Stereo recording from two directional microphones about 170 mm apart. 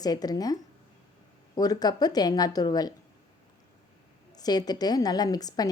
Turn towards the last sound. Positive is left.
turn(degrees=20)  # may be behind; listen again after turning